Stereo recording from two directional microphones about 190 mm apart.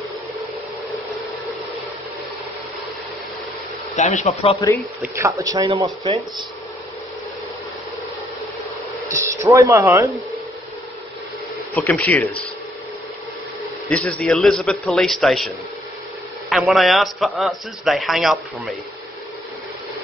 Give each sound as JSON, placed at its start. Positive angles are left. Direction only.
{"t": 3.9, "sound": "speech", "side_deg": 40}
{"t": 5.0, "sound": "speech", "side_deg": -15}
{"t": 9.1, "sound": "speech", "side_deg": -15}
{"t": 11.7, "sound": "speech", "side_deg": 10}
{"t": 13.8, "sound": "a man's voice", "side_deg": 5}